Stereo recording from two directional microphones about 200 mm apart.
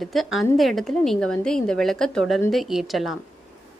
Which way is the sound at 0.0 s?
Centre (ahead or behind).